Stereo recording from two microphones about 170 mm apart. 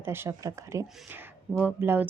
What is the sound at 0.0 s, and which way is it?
A woman's voice, 15° right (ahead or behind).